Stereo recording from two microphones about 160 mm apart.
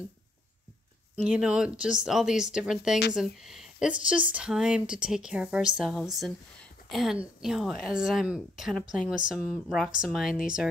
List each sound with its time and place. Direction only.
1.2 s speech: 5° right (ahead or behind)